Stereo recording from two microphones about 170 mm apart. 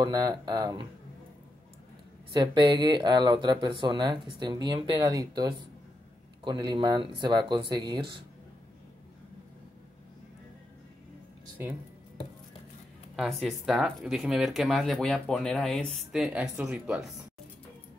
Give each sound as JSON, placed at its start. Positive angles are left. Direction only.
{"t": 0.0, "sound": "speech", "side_deg": -25}
{"t": 2.4, "sound": "speech", "side_deg": -25}
{"t": 13.1, "sound": "speech", "side_deg": 0}